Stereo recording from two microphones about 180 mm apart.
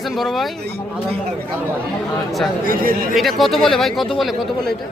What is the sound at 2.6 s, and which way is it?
Speech, 55° right (ahead or behind).